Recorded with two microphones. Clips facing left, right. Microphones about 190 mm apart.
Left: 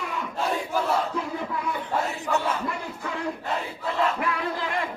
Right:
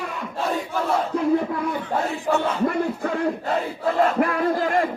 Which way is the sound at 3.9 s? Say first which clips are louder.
Right 6 dB; 45° right (ahead or behind).